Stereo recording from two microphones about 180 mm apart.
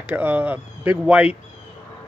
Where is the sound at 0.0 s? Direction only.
10° right (ahead or behind).